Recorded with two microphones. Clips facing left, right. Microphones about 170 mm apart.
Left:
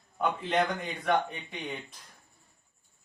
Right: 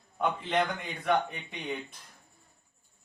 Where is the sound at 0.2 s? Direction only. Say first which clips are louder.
Left 1 dB; centre (ahead or behind).